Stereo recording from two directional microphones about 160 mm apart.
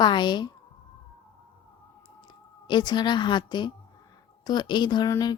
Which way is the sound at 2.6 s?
25° left (ahead or behind).